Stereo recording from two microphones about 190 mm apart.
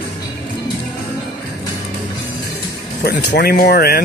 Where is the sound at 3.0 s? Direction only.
55° left (ahead or behind).